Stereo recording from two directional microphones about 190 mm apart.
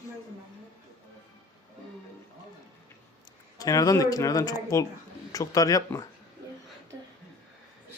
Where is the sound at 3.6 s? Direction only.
20° left (ahead or behind).